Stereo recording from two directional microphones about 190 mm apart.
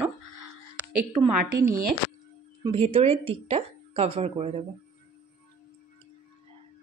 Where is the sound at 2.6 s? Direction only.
30° right (ahead or behind).